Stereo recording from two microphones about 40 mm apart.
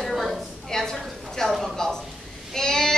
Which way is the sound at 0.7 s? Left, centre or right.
Centre.